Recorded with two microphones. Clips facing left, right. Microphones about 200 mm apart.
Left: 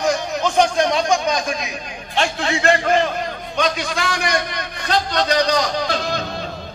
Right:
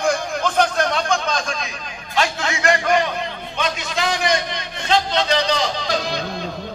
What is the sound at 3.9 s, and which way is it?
A man's voice, 50° left (ahead or behind).